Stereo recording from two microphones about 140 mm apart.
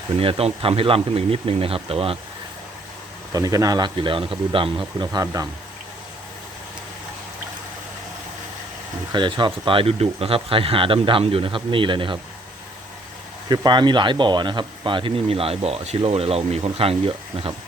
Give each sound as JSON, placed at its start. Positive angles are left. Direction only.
{"t": 0.2, "sound": "speech", "side_deg": -45}
{"t": 3.3, "sound": "speech", "side_deg": -25}
{"t": 9.1, "sound": "speech", "side_deg": -35}
{"t": 13.7, "sound": "speech", "side_deg": -35}